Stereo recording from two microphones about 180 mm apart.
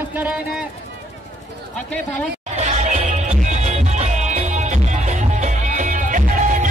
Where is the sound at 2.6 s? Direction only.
40° right (ahead or behind).